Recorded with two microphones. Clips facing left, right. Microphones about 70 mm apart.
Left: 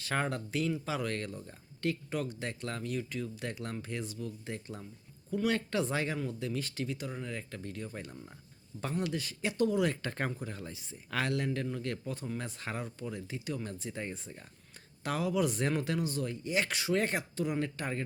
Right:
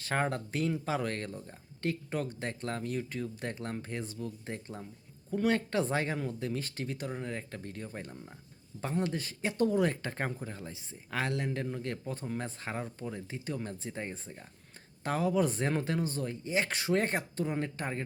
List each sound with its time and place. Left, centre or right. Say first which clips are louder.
0.0 s speech: right 2 dB; right